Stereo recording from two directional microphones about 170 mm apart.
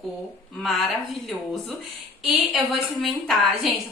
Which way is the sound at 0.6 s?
Centre (ahead or behind).